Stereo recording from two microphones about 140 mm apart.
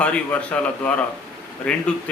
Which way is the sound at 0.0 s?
10° left (ahead or behind).